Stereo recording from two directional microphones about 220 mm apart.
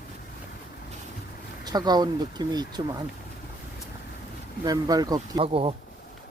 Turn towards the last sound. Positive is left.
turn(degrees=-25)  # may be behind; listen again after turning